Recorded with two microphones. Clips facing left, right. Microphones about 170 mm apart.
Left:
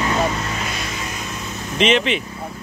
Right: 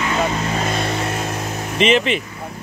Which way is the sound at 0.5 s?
50° right (ahead or behind).